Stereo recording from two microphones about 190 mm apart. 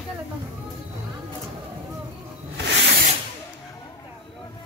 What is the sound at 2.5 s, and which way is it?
Snake, 65° right (ahead or behind).